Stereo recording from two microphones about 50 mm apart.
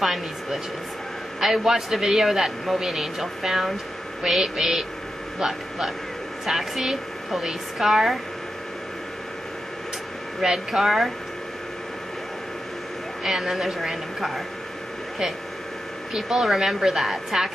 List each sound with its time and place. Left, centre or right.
0.0 s a man's voice: centre
6.4 s speech: centre
10.4 s a man's voice: centre
13.2 s speech: centre
16.1 s a man's voice: centre